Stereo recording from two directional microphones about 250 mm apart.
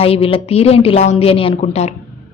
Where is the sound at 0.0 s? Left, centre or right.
Left.